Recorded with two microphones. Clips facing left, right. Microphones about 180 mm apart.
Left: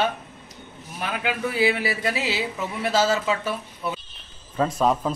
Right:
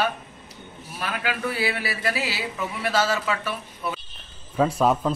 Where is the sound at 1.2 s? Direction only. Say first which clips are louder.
Left 4 dB; 20° left (ahead or behind).